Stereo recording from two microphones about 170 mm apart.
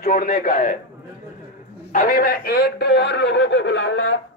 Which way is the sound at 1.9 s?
55° left (ahead or behind).